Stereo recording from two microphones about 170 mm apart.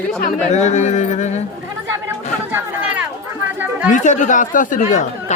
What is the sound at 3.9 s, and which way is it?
Speech, 45° left (ahead or behind).